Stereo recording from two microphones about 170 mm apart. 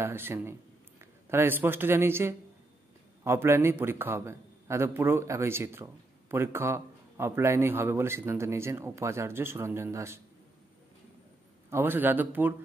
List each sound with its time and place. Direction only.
0.0 s a man's voice: 15° right (ahead or behind)
11.7 s a man's voice: 10° right (ahead or behind)